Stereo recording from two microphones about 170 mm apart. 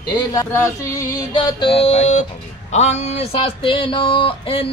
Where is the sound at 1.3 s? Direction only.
30° left (ahead or behind).